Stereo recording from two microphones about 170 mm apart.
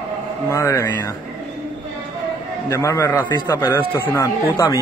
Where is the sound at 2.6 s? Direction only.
20° left (ahead or behind).